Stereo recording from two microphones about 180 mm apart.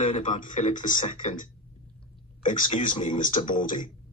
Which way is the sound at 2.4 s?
45° left (ahead or behind).